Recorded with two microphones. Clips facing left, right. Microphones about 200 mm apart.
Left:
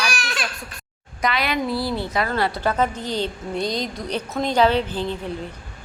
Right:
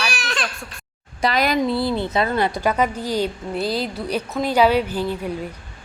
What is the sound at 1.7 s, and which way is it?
A woman's voice, 25° right (ahead or behind).